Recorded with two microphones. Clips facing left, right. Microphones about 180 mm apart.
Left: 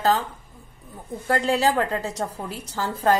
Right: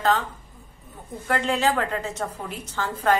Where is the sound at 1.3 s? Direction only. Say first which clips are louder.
Left 2 dB; 35° left (ahead or behind).